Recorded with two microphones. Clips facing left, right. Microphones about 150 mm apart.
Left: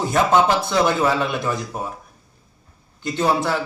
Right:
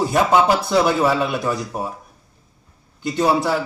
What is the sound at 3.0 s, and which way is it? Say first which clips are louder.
Speech: right 2 dB; 10° right (ahead or behind).